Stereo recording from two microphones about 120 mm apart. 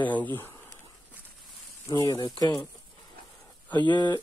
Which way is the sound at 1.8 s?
30° left (ahead or behind).